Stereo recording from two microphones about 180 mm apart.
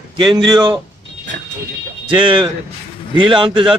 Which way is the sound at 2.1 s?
25° right (ahead or behind).